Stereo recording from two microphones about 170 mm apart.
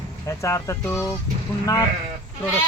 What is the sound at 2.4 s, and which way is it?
Speech, 15° left (ahead or behind).